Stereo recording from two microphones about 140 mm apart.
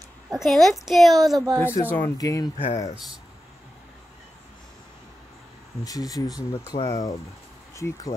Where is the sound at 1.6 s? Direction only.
15° left (ahead or behind).